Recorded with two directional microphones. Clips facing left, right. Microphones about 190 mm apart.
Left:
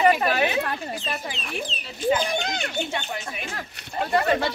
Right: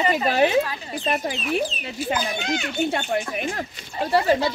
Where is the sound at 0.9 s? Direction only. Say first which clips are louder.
Right 6 dB; 55° right (ahead or behind).